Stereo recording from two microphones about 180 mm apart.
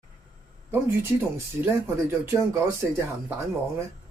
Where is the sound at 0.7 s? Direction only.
15° right (ahead or behind).